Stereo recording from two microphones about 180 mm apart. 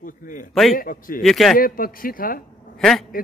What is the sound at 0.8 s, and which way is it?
Speech, 50° left (ahead or behind).